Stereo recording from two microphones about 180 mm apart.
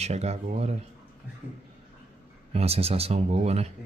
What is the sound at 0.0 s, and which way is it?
Speech, 35° right (ahead or behind).